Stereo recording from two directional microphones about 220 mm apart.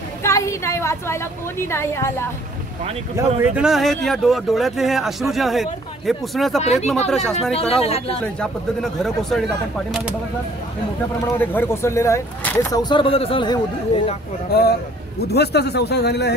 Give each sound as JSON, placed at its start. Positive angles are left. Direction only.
{"t": 0.2, "sound": "a woman's voice", "side_deg": 15}
{"t": 3.2, "sound": "speech", "side_deg": -5}
{"t": 6.6, "sound": "speech", "side_deg": 30}
{"t": 7.1, "sound": "speech", "side_deg": 0}
{"t": 7.8, "sound": "speech", "side_deg": 25}
{"t": 8.2, "sound": "speech", "side_deg": 5}
{"t": 11.3, "sound": "speech", "side_deg": 10}
{"t": 14.5, "sound": "speech", "side_deg": 45}